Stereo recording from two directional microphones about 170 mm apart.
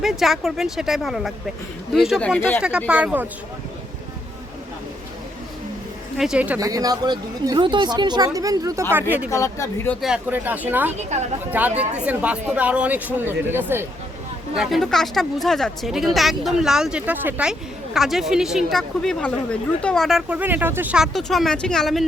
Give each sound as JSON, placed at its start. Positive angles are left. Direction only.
{"t": 0.0, "sound": "speech", "side_deg": 0}
{"t": 2.6, "sound": "speech", "side_deg": -5}
{"t": 6.1, "sound": "speech", "side_deg": -5}
{"t": 6.6, "sound": "speech", "side_deg": -20}
{"t": 9.3, "sound": "speech", "side_deg": 20}
{"t": 10.0, "sound": "speech", "side_deg": -5}
{"t": 10.9, "sound": "a woman's voice", "side_deg": -40}
{"t": 11.8, "sound": "speech", "side_deg": -10}
{"t": 14.5, "sound": "speech", "side_deg": 0}